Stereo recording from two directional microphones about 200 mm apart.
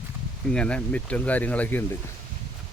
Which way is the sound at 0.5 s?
5° left (ahead or behind).